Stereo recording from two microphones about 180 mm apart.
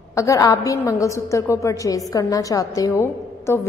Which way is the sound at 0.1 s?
15° left (ahead or behind).